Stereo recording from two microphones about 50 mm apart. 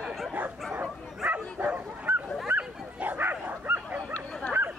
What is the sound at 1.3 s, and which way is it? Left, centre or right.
Bow-wow, right.